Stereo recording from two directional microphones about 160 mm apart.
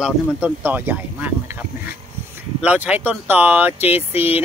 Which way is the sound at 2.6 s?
10° right (ahead or behind).